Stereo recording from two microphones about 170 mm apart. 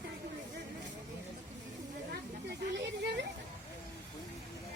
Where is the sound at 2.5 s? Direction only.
90° right.